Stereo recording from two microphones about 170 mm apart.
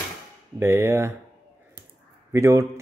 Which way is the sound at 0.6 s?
15° right (ahead or behind).